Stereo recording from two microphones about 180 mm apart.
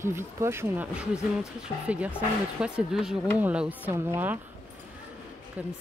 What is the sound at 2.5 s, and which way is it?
Speech, 5° right (ahead or behind).